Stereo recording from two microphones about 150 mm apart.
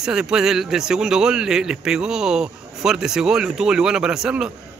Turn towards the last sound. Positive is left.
turn(degrees=-5)  # may be behind; listen again after turning